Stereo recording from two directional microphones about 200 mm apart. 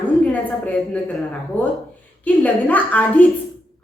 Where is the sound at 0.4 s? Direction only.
5° left (ahead or behind).